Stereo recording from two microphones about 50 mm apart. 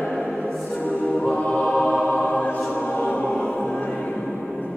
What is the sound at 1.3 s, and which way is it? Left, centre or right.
Music, left.